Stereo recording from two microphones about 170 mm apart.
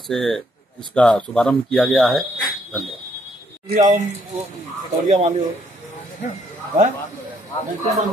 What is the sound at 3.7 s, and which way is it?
Speech, 50° right (ahead or behind).